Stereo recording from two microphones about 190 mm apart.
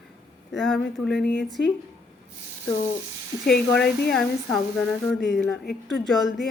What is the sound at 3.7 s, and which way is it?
Speech, 5° left (ahead or behind).